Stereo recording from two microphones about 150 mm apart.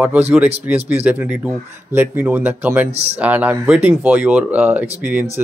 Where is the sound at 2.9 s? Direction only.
45° right (ahead or behind).